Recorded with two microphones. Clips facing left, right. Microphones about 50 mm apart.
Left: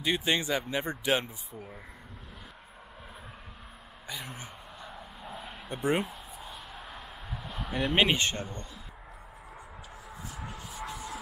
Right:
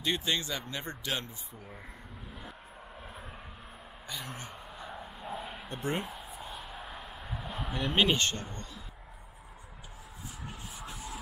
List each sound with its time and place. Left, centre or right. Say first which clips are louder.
0.0 s speech: left 3 dB; centre
1.5 s speech: left 4 dB; centre
4.1 s speech: left 1 dB; centre
4.7 s vehicle: right 3 dB; centre
5.7 s speech: left 6 dB; centre
6.0 s a sound: right 1 dB; centre
7.9 s speech: left 1 dB; centre
10.9 s rub: left 2 dB; centre